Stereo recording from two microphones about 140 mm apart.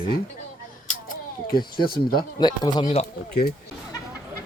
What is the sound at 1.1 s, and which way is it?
Speech, 90° left.